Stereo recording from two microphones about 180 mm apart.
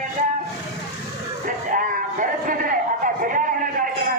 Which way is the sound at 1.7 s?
50° right (ahead or behind).